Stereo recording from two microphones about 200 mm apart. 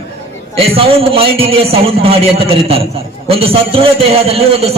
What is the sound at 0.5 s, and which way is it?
A man's voice, 30° right (ahead or behind).